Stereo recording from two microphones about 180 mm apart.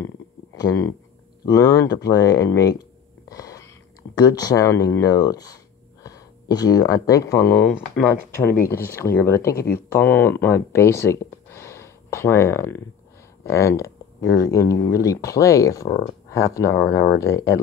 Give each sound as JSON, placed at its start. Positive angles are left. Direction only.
{"t": 0.6, "sound": "speech", "side_deg": 20}
{"t": 8.5, "sound": "speech", "side_deg": 15}